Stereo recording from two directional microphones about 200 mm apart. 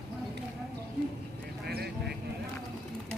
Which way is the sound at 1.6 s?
50° right (ahead or behind).